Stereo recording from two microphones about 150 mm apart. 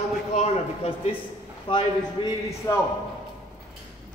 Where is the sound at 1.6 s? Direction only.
30° left (ahead or behind).